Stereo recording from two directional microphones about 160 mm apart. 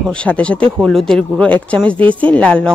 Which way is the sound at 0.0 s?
5° left (ahead or behind).